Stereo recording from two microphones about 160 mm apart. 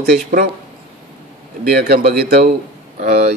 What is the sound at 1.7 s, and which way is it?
Speech, 75° right (ahead or behind).